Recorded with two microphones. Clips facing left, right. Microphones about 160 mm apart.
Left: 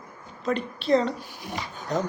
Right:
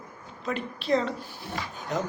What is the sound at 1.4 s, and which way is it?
Speech, 15° left (ahead or behind).